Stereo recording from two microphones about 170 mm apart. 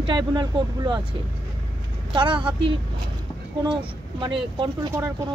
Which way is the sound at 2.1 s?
30° right (ahead or behind).